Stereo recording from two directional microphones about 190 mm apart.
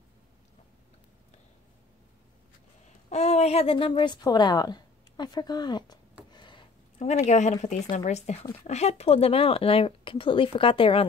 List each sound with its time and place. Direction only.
3.1 s a woman's voice: 35° left (ahead or behind)
6.3 s a sound: 25° left (ahead or behind)
7.0 s speech: 35° left (ahead or behind)